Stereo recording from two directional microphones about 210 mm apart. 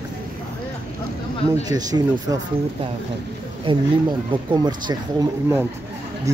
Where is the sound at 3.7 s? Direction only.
25° right (ahead or behind).